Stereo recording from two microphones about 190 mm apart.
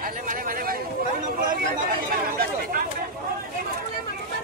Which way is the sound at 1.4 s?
50° right (ahead or behind).